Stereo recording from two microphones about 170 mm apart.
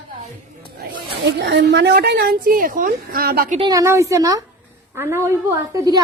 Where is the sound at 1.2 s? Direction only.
85° right; by 3.6 s 65° right (ahead or behind).